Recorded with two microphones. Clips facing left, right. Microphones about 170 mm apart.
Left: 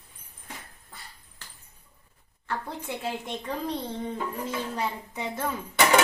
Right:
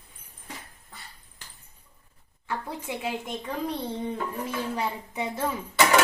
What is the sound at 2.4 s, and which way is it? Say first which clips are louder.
A woman's voice: even; 5° right (ahead or behind).